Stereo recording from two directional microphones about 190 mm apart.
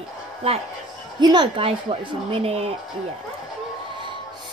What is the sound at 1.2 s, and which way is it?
A woman's voice, 25° right (ahead or behind).